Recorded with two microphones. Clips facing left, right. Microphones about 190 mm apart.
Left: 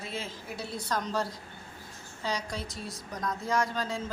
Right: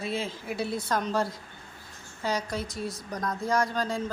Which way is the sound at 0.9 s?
60° right (ahead or behind).